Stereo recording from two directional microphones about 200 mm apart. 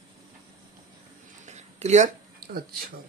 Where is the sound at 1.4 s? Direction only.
35° right (ahead or behind).